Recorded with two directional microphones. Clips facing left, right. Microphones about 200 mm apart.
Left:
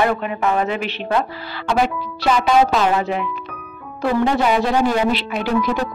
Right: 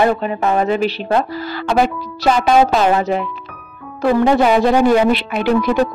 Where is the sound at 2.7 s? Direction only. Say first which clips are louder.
Right 3 dB; 40° right (ahead or behind).